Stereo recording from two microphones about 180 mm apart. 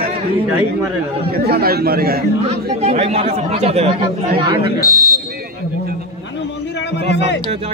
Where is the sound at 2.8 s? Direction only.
35° right (ahead or behind).